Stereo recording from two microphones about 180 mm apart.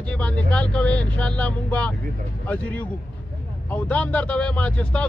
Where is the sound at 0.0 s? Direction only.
5° left (ahead or behind).